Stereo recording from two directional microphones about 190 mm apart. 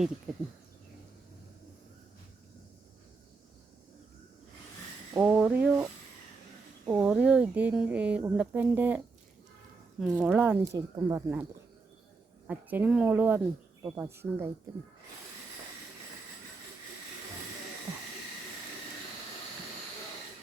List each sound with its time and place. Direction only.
5.1 s speech: 10° right (ahead or behind)
10.0 s speech: 5° right (ahead or behind)
10.7 s speech: 20° right (ahead or behind)
12.5 s speech: 10° right (ahead or behind)